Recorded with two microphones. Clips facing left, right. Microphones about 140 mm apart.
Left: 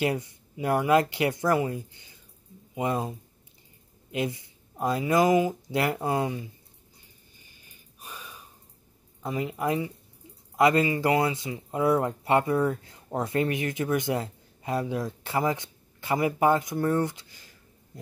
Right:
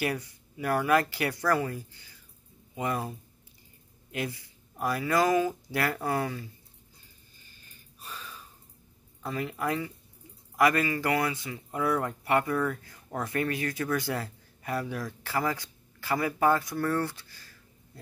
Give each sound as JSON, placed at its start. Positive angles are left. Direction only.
{"t": 0.0, "sound": "speech", "side_deg": 20}
{"t": 7.3, "sound": "a sound", "side_deg": 15}
{"t": 9.2, "sound": "speech", "side_deg": 20}